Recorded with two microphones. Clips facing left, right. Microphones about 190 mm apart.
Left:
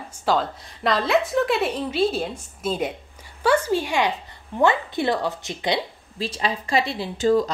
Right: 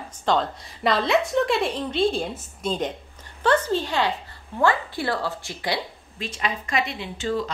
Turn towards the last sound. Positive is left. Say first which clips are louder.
# left 7 dB
turn(degrees=40)  # may be behind; listen again after turning